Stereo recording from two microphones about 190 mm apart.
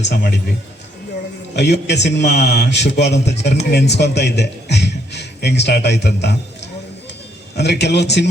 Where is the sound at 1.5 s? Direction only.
65° left (ahead or behind).